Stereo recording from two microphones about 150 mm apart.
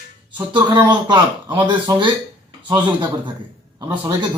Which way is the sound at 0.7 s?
30° right (ahead or behind).